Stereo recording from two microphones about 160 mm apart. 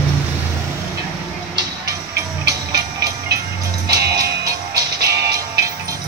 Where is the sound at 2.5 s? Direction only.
20° right (ahead or behind).